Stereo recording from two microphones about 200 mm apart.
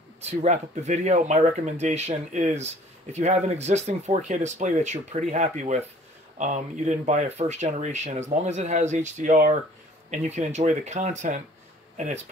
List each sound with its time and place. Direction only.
0.2 s speech: 35° right (ahead or behind)